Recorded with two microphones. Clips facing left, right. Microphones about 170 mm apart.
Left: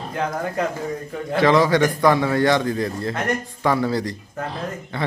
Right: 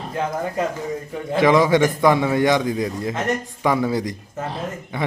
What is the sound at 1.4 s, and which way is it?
A man's voice, 20° right (ahead or behind).